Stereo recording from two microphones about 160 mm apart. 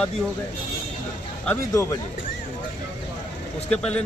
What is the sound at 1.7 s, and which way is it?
Speech, 20° left (ahead or behind).